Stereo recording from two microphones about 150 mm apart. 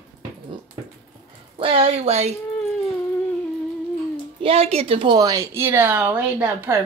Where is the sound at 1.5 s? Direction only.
40° right (ahead or behind).